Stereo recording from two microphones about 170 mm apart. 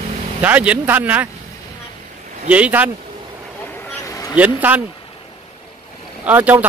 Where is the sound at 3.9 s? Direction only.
20° left (ahead or behind).